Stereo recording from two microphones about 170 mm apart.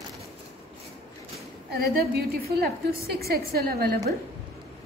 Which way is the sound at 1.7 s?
65° right (ahead or behind).